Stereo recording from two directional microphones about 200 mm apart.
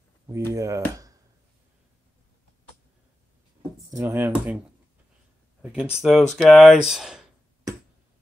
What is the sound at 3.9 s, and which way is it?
Speech, 10° right (ahead or behind).